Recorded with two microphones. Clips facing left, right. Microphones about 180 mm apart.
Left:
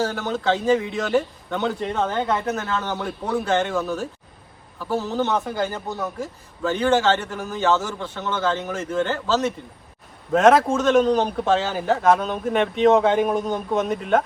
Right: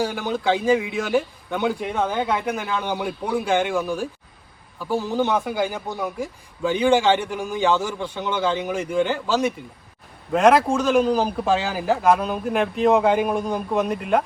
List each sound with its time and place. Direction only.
0.0 s a man's voice: 10° right (ahead or behind)
10.3 s a man's voice: centre (ahead or behind)